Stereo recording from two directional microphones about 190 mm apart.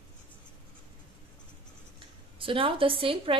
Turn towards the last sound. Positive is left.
turn(degrees=-30)  # may be behind; listen again after turning